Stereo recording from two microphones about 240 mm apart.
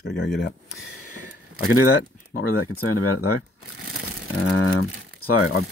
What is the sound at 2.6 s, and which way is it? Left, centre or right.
Speech, left.